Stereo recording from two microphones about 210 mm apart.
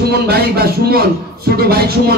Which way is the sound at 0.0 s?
50° right (ahead or behind).